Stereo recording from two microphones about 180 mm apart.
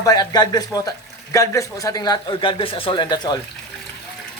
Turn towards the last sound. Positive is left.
turn(degrees=25)  # may be behind; listen again after turning